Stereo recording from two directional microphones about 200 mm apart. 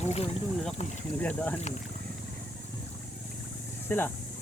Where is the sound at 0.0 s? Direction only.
35° left (ahead or behind).